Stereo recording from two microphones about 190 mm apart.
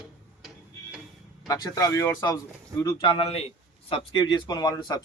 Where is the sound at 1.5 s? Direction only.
20° left (ahead or behind).